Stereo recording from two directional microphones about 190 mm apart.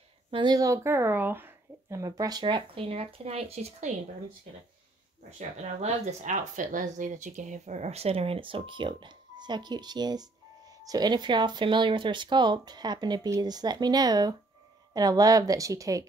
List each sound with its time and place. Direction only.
0.3 s speech: 20° right (ahead or behind)
5.6 s a woman's voice: 35° right (ahead or behind); by 16.1 s 15° right (ahead or behind)